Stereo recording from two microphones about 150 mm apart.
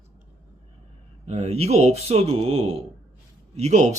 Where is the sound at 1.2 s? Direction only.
45° right (ahead or behind).